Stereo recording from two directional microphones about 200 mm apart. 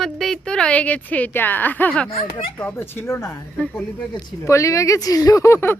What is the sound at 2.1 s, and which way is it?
Speech, 30° left (ahead or behind).